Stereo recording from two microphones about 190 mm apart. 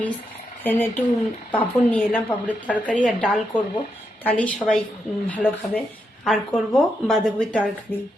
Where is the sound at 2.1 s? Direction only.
5° left (ahead or behind).